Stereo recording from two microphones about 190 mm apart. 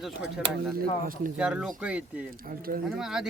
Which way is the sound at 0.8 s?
50° right (ahead or behind).